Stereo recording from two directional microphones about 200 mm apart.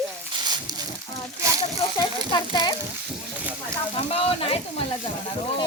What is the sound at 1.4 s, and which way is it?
Speech, 15° right (ahead or behind).